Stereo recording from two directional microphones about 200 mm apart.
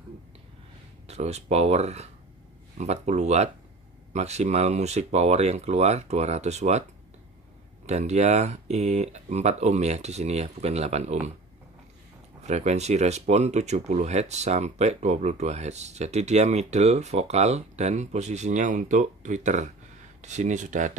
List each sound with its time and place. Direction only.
1.0 s speech: 35° right (ahead or behind)
7.8 s speech: 35° right (ahead or behind)
12.4 s speech: 35° right (ahead or behind)